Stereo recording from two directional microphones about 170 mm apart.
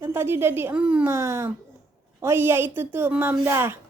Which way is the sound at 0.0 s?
15° right (ahead or behind).